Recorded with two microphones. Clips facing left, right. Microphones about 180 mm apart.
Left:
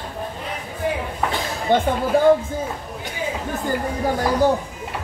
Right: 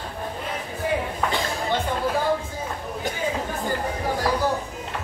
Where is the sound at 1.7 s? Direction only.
55° left (ahead or behind).